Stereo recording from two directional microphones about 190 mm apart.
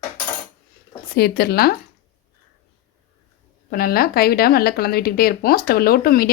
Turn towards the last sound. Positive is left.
turn(degrees=50)  # may be behind; listen again after turning